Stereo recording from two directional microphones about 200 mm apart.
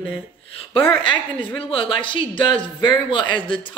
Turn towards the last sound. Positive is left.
turn(degrees=25)  # may be behind; listen again after turning